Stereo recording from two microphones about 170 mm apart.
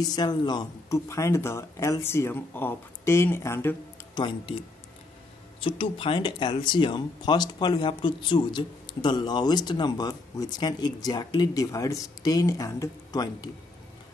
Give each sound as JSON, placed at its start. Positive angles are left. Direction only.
{"t": 0.0, "sound": "speech", "side_deg": 25}
{"t": 4.2, "sound": "speech", "side_deg": 30}